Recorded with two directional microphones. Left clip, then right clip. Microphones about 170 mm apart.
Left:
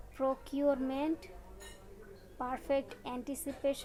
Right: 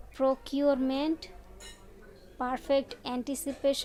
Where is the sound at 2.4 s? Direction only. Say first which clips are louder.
Right 6 dB; 45° right (ahead or behind).